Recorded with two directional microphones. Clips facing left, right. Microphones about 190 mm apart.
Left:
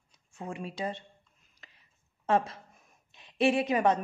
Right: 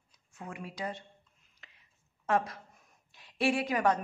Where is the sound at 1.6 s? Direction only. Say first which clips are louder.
Left 2 dB; 35° left (ahead or behind).